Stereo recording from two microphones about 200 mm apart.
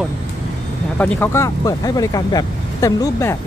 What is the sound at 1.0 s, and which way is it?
Speech, 10° left (ahead or behind).